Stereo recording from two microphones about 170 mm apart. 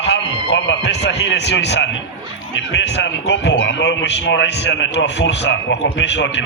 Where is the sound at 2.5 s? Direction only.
90° left.